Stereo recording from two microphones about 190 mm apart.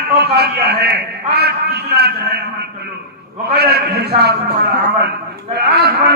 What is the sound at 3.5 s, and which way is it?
A man's voice, 55° right (ahead or behind).